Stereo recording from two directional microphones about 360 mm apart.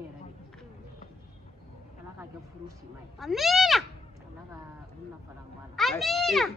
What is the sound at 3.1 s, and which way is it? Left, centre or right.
Speech, centre.